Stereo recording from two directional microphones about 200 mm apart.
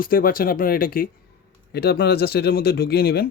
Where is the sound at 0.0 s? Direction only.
45° left (ahead or behind).